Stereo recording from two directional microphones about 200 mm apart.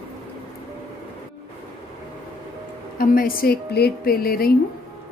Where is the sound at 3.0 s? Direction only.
45° left (ahead or behind).